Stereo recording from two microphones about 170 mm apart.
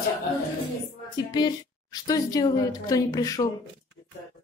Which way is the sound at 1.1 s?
25° left (ahead or behind).